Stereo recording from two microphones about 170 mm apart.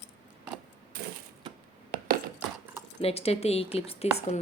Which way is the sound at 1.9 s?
60° right (ahead or behind).